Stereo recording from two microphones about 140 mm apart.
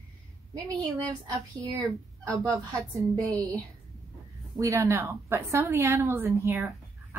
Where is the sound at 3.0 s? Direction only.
25° right (ahead or behind).